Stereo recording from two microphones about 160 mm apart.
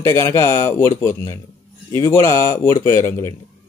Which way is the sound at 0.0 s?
20° left (ahead or behind).